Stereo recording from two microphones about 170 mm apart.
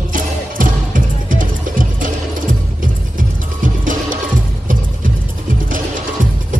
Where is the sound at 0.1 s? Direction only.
50° right (ahead or behind).